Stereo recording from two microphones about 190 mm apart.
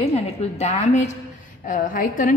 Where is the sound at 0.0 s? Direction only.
35° left (ahead or behind).